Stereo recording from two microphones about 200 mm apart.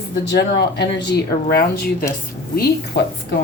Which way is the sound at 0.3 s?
60° left (ahead or behind).